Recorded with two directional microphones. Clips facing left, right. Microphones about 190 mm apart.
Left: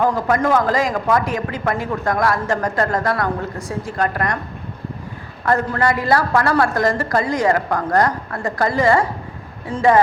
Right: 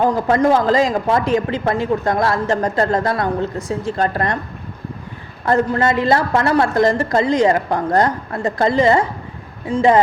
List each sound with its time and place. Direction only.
0.0 s a woman's voice: 25° right (ahead or behind)
5.5 s a woman's voice: 25° right (ahead or behind)